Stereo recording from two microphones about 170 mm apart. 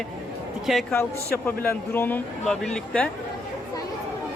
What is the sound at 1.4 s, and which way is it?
Speech, 15° left (ahead or behind).